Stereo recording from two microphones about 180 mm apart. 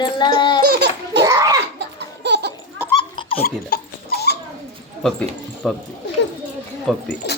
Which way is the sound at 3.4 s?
55° left (ahead or behind).